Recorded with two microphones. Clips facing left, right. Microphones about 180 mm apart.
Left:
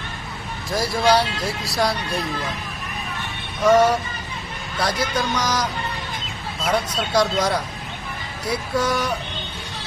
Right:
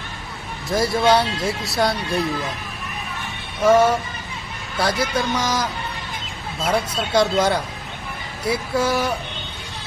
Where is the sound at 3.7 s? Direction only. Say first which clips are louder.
Even; 25° right (ahead or behind).